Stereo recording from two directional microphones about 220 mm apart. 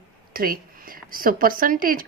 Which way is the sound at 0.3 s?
40° right (ahead or behind).